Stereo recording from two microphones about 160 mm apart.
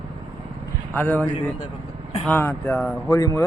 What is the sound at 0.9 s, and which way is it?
Speech, 10° left (ahead or behind).